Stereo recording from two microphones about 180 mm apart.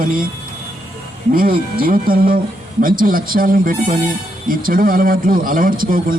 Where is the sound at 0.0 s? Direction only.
50° right (ahead or behind).